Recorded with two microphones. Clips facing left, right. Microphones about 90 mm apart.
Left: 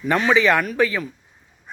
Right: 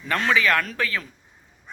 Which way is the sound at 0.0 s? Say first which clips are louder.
Left 4 dB; 10° left (ahead or behind).